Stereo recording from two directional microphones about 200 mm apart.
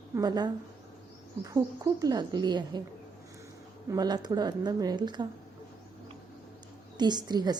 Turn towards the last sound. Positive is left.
turn(degrees=-20)  # may be behind; listen again after turning